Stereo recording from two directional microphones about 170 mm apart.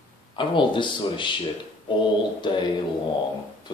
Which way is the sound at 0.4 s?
30° left (ahead or behind).